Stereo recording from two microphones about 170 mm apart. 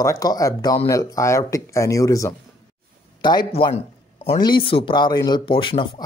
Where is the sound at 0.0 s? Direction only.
20° left (ahead or behind).